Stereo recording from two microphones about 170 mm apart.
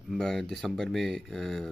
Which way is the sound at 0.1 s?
5° left (ahead or behind).